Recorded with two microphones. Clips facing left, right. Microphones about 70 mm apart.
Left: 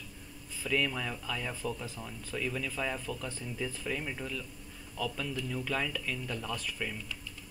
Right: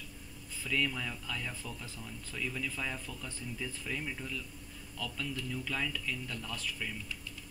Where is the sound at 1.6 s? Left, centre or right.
Left.